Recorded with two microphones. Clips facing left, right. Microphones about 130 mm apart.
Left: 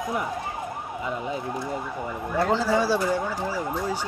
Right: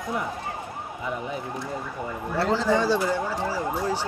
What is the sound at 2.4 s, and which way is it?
Speech, 15° left (ahead or behind).